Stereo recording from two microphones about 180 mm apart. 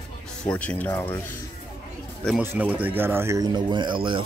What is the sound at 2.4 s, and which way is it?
Speech, 10° right (ahead or behind).